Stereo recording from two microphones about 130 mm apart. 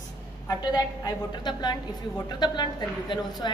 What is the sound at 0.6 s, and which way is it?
A woman's voice, 30° left (ahead or behind).